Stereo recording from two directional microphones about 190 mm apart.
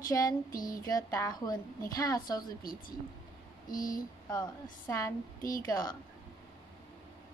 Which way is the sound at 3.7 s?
45° left (ahead or behind).